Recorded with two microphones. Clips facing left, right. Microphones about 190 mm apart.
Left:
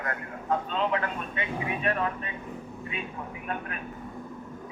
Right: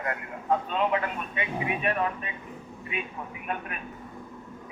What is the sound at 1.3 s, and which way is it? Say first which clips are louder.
Speech: right 1 dB; 15° right (ahead or behind).